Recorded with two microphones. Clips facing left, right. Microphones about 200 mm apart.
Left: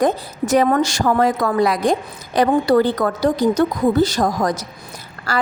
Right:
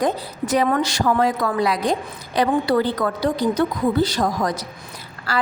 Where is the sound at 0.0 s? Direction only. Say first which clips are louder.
Left 4 dB; 45° left (ahead or behind).